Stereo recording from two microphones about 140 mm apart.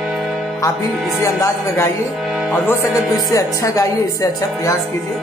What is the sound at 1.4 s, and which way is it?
Speech, 20° left (ahead or behind).